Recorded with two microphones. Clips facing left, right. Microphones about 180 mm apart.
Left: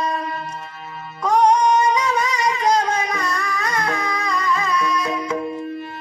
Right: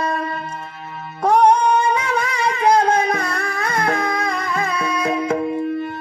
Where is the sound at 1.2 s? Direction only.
55° right (ahead or behind).